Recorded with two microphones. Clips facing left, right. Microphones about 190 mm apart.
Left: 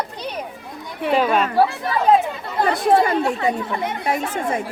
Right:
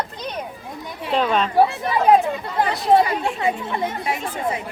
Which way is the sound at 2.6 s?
50° left (ahead or behind).